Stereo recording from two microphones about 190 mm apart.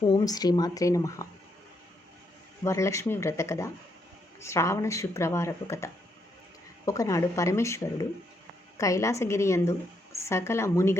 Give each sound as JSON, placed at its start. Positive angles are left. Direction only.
{"t": 0.0, "sound": "speech", "side_deg": 20}
{"t": 2.6, "sound": "a woman's voice", "side_deg": 15}